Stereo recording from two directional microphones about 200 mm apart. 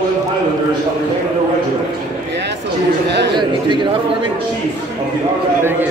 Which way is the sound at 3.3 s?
25° right (ahead or behind).